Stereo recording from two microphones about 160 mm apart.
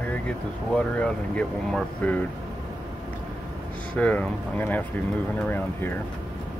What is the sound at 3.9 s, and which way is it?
Speech, 10° left (ahead or behind).